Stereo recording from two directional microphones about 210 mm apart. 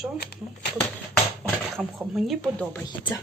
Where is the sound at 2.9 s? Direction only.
20° left (ahead or behind).